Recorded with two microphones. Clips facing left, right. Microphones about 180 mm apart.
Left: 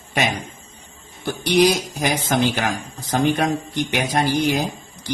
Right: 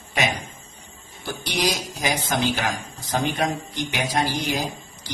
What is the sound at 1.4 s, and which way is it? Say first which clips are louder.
A man's voice: left 9 dB; 60° left (ahead or behind).